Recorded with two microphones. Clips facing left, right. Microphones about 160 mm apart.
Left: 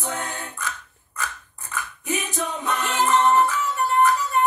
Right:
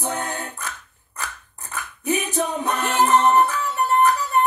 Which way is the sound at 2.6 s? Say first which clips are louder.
Right 1 dB; 40° right (ahead or behind).